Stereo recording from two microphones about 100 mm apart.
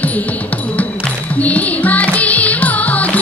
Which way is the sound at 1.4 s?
15° left (ahead or behind).